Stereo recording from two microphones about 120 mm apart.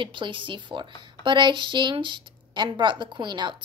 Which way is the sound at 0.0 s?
45° right (ahead or behind).